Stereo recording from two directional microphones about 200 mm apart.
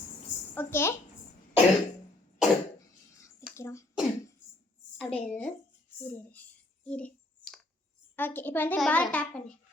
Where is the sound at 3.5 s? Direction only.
15° left (ahead or behind).